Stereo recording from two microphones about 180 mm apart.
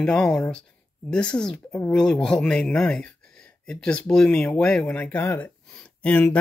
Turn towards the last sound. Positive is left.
turn(degrees=5)  # may be behind; listen again after turning